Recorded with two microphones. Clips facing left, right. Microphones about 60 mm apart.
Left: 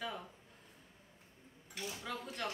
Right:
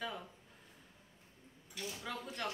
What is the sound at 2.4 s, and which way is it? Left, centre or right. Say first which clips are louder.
Speech: even; centre.